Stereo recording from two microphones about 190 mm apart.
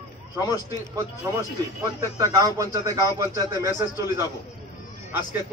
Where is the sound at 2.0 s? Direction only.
15° right (ahead or behind).